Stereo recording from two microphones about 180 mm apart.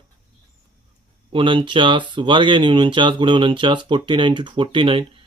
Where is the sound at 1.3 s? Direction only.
30° right (ahead or behind).